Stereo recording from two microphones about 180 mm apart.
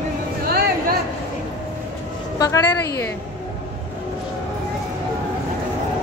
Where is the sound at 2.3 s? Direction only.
20° left (ahead or behind).